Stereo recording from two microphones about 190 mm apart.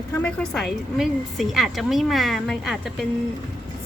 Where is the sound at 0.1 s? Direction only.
5° left (ahead or behind).